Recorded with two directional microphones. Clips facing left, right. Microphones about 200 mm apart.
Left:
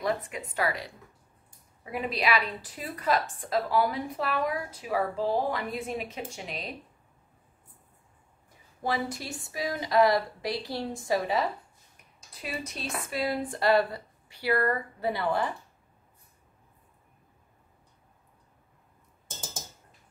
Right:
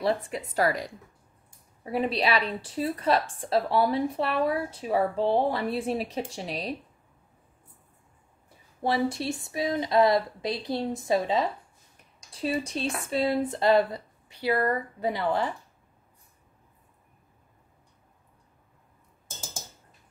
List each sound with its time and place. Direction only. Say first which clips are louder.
0.0 s a woman's voice: right 3 dB; 35° right (ahead or behind)
1.9 s a woman's voice: right 3 dB; 30° right (ahead or behind)
8.8 s speech: right 5 dB; 25° right (ahead or behind)